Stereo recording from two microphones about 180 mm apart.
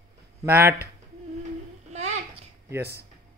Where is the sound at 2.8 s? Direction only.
65° right (ahead or behind).